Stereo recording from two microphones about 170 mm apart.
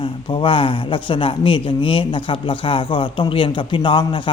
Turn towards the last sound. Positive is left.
turn(degrees=30)  # may be behind; listen again after turning